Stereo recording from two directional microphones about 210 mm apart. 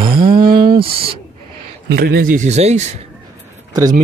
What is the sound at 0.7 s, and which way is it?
Speech, 25° right (ahead or behind).